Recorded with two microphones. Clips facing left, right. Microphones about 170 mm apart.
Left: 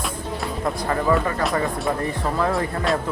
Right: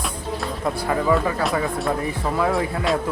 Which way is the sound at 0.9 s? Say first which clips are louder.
Right 1 dB; 5° right (ahead or behind).